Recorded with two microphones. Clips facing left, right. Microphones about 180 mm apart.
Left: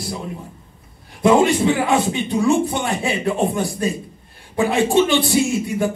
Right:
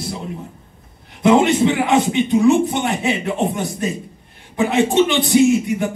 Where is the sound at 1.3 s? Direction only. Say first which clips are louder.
Right 1 dB; 20° right (ahead or behind).